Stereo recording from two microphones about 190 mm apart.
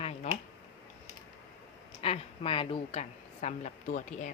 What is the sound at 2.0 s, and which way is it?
A woman's voice, 30° left (ahead or behind).